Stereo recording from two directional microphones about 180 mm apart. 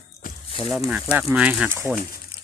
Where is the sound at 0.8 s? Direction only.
5° right (ahead or behind).